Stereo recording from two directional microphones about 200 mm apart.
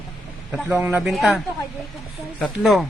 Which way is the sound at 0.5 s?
10° right (ahead or behind).